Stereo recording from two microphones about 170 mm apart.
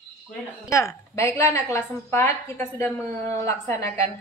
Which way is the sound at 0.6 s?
15° left (ahead or behind).